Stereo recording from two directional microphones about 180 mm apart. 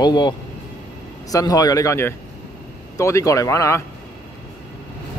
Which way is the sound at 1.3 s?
20° left (ahead or behind).